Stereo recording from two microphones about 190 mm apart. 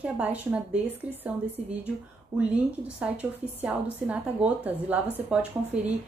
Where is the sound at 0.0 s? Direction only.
10° right (ahead or behind).